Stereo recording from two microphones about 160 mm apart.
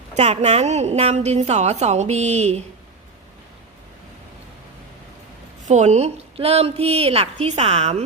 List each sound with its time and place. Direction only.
0.1 s a woman's voice: 45° right (ahead or behind)
5.6 s a woman's voice: 45° right (ahead or behind)